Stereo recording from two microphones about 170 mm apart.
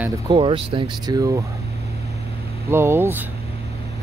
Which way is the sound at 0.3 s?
30° right (ahead or behind).